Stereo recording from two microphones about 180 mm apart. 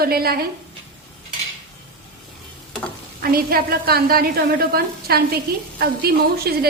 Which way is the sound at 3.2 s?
55° right (ahead or behind).